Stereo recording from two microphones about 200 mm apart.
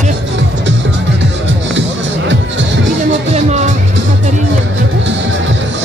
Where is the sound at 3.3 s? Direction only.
35° right (ahead or behind).